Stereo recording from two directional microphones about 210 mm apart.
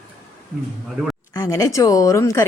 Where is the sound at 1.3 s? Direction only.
15° left (ahead or behind).